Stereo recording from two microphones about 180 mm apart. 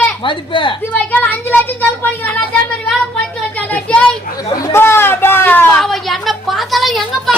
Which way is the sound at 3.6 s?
10° left (ahead or behind).